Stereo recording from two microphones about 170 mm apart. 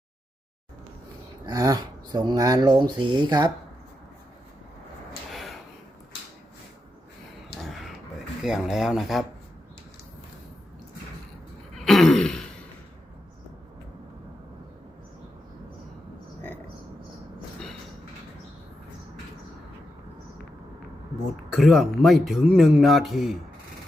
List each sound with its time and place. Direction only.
1.5 s speech: 20° right (ahead or behind)
5.3 s drawer open or close: centre (ahead or behind)
8.4 s speech: centre (ahead or behind)
11.9 s throat clearing: centre (ahead or behind)
21.5 s speech: centre (ahead or behind)